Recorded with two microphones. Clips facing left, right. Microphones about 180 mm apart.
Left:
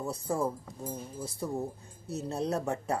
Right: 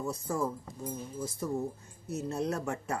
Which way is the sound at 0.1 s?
35° left (ahead or behind).